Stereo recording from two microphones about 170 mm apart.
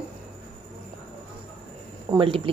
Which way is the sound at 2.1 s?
30° right (ahead or behind).